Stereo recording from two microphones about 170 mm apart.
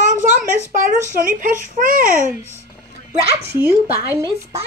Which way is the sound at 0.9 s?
50° right (ahead or behind).